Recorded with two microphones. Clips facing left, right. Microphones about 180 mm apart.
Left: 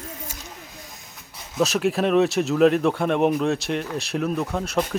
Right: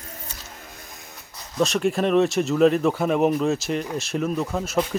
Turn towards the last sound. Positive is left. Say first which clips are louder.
# even
turn(degrees=0)  # may be behind; listen again after turning